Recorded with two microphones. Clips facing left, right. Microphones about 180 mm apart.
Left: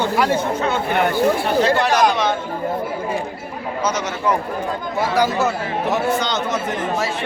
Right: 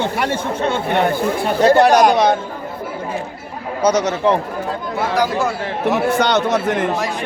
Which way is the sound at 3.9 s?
35° right (ahead or behind).